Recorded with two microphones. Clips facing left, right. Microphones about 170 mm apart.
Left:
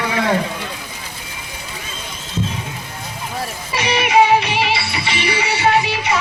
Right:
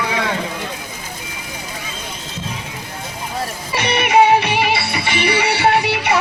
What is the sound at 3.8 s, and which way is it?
Music, 55° right (ahead or behind).